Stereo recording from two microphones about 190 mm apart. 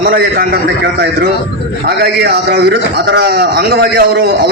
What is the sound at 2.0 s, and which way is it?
A man's voice, 60° right (ahead or behind).